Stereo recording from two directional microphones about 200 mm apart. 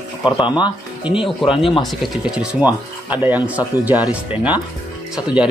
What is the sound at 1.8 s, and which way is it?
Speech, centre (ahead or behind).